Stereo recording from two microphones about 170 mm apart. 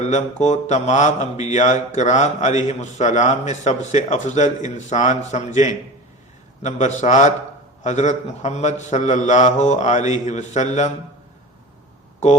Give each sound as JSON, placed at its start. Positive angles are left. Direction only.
{"t": 0.0, "sound": "mantra", "side_deg": 45}